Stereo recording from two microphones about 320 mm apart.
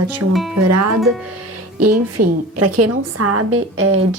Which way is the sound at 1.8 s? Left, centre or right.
Right.